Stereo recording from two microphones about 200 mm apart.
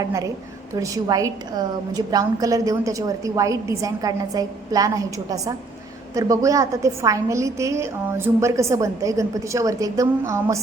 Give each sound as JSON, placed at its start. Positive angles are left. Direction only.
{"t": 0.0, "sound": "a woman's voice", "side_deg": -15}